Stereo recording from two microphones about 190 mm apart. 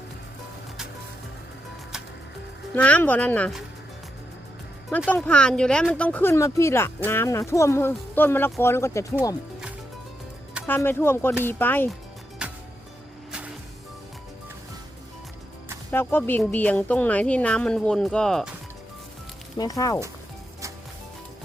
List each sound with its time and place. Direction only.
2.7 s speech: 5° left (ahead or behind)
5.0 s speech: 10° left (ahead or behind)
10.7 s speech: 10° left (ahead or behind)
12.4 s music: 5° right (ahead or behind)
15.9 s speech: 10° left (ahead or behind)
19.5 s speech: 20° left (ahead or behind)